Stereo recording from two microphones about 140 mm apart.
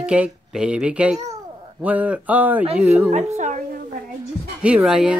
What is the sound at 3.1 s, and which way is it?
Speech, 55° right (ahead or behind).